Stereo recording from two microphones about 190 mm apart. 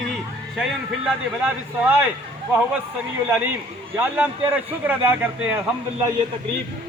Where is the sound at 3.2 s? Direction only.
10° right (ahead or behind).